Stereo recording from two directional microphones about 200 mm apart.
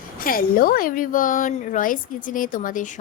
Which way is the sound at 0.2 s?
45° left (ahead or behind).